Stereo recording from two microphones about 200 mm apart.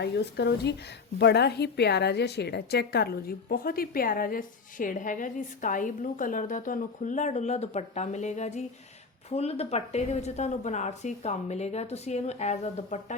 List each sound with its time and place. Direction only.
0.0 s a woman's voice: 55° left (ahead or behind); by 13.1 s 35° left (ahead or behind)